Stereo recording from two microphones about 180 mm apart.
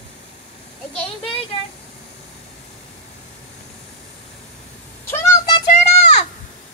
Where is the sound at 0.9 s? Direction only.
30° left (ahead or behind).